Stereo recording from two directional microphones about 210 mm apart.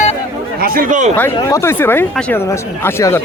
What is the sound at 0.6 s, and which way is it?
Speech, 45° right (ahead or behind).